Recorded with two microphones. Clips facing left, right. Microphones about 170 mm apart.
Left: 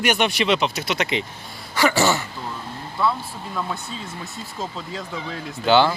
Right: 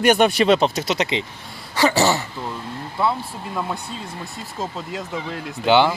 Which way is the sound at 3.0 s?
25° right (ahead or behind).